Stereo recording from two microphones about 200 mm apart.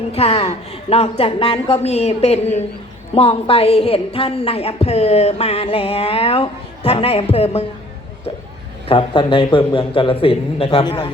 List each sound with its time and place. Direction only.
0.1 s a woman's voice: 30° left (ahead or behind)
8.9 s a woman's voice: 25° left (ahead or behind)